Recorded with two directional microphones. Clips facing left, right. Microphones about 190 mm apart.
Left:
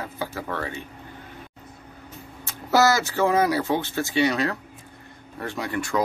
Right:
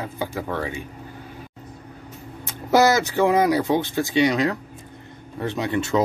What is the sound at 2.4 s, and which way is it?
Speech, 20° right (ahead or behind).